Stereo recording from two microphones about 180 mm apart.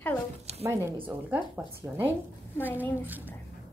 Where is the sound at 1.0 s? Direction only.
10° right (ahead or behind).